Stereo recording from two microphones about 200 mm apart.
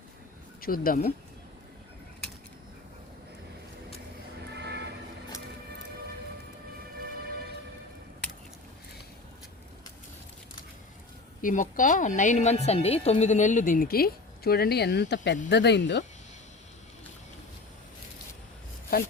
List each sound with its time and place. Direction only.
0.6 s speech: 45° left (ahead or behind)
4.5 s a sound: 60° right (ahead or behind)
11.4 s a woman's voice: 40° left (ahead or behind); by 16.0 s 55° left (ahead or behind)
18.9 s speech: 50° left (ahead or behind)